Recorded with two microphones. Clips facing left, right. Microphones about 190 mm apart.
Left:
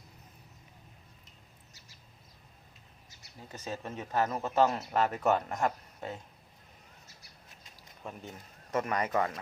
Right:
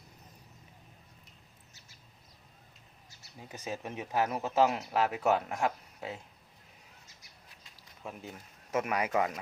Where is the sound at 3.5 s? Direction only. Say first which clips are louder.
Even; 10° right (ahead or behind).